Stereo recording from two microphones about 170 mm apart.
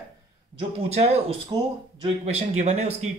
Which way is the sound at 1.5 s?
20° right (ahead or behind).